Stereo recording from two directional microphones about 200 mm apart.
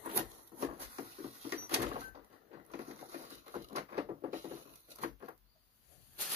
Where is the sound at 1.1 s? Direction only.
30° right (ahead or behind).